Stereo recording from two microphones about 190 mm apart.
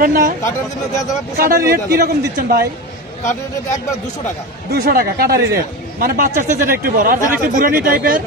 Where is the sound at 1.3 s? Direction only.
50° right (ahead or behind).